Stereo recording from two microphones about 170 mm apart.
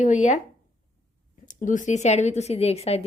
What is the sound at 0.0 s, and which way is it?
Speech, 45° left (ahead or behind).